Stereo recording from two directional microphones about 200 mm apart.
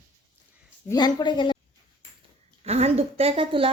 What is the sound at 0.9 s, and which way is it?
Speech, 20° left (ahead or behind).